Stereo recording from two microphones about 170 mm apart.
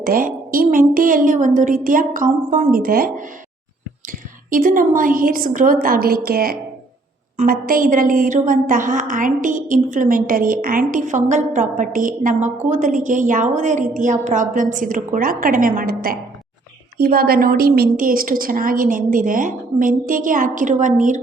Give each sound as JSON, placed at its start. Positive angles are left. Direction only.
{"t": 0.0, "sound": "a woman's voice", "side_deg": -55}
{"t": 4.4, "sound": "a woman's voice", "side_deg": -55}